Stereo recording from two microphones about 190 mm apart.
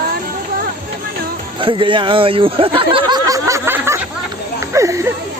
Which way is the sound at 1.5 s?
25° right (ahead or behind).